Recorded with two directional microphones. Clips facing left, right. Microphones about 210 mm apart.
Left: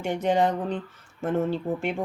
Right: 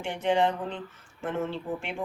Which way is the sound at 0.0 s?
40° left (ahead or behind).